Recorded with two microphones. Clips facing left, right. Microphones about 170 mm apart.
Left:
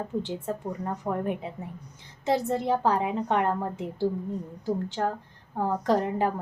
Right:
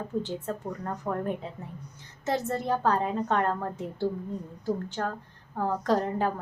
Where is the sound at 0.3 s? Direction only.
15° left (ahead or behind).